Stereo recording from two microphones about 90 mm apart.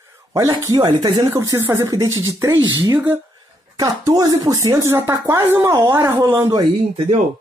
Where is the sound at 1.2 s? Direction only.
40° right (ahead or behind).